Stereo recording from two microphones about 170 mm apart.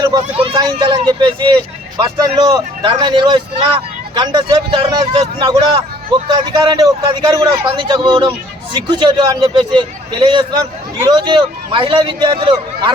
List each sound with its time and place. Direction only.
0.0 s a man's voice: 25° right (ahead or behind)